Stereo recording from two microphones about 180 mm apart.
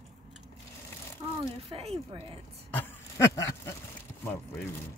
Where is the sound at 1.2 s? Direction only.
25° right (ahead or behind).